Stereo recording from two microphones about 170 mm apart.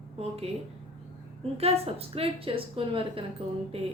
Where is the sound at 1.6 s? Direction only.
35° right (ahead or behind).